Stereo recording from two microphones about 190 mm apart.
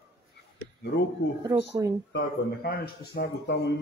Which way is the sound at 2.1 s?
55° left (ahead or behind).